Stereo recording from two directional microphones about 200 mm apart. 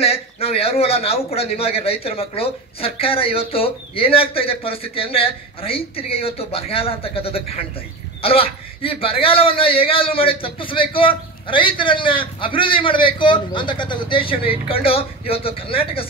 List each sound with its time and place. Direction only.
0.0 s a man's voice: 30° left (ahead or behind)